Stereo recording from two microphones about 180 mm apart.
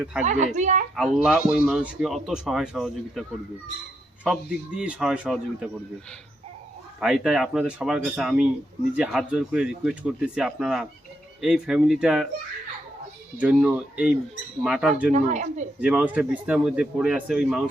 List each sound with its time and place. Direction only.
0.0 s speech: 5° right (ahead or behind)
0.3 s speech: 40° right (ahead or behind)
0.9 s speech: centre (ahead or behind)
7.0 s speech: 5° right (ahead or behind)
13.4 s speech: 5° right (ahead or behind)
15.1 s a woman's voice: 40° right (ahead or behind)
15.8 s speech: 5° right (ahead or behind)